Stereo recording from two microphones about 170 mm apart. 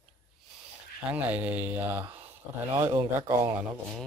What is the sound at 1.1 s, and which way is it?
Speech, 10° right (ahead or behind).